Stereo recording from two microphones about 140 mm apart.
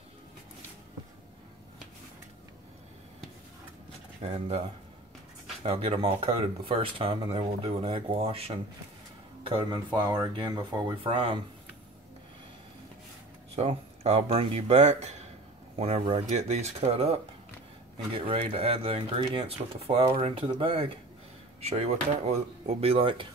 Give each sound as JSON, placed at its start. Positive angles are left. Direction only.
{"t": 4.2, "sound": "speech", "side_deg": -50}
{"t": 5.6, "sound": "speech", "side_deg": -45}
{"t": 13.6, "sound": "speech", "side_deg": -50}